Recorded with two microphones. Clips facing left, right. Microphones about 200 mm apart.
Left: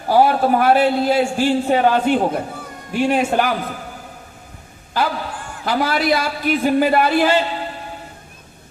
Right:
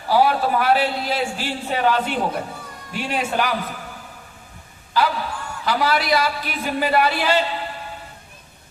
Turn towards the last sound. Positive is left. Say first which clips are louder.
# left 4 dB
turn(degrees=50)  # may be behind; listen again after turning